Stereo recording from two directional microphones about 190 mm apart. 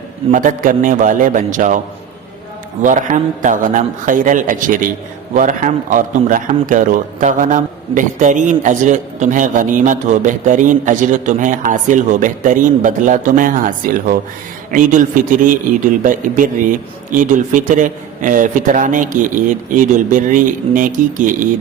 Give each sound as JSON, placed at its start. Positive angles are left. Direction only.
{"t": 0.3, "sound": "a man's voice", "side_deg": -45}
{"t": 2.8, "sound": "a man's voice", "side_deg": -40}